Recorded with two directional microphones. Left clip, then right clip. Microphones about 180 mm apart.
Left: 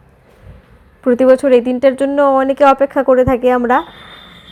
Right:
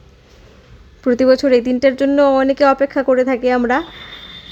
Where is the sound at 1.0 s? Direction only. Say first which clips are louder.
Left 3 dB; 20° right (ahead or behind).